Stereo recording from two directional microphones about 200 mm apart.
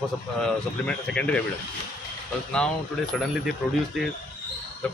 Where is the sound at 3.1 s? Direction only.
Centre (ahead or behind).